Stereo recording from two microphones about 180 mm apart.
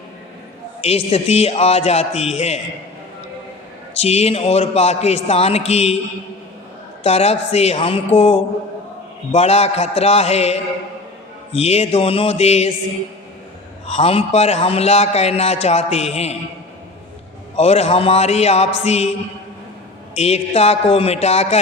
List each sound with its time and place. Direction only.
0.8 s a man's voice: 35° left (ahead or behind)
3.9 s a man's voice: 35° left (ahead or behind)
7.0 s a man's voice: 35° left (ahead or behind)
13.8 s a man's voice: 35° left (ahead or behind)
17.6 s a man's voice: 35° left (ahead or behind)
20.1 s a man's voice: 35° left (ahead or behind)